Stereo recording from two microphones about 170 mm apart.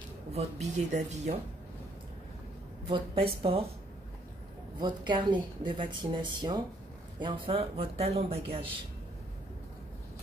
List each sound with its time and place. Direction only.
0.3 s a woman's voice: 40° right (ahead or behind)
2.9 s speech: 30° right (ahead or behind)
4.7 s a woman's voice: 25° right (ahead or behind)